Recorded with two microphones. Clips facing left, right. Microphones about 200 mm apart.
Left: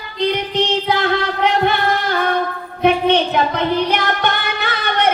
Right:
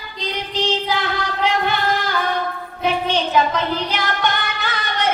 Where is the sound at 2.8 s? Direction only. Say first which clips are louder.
Left 6 dB; 60° left (ahead or behind).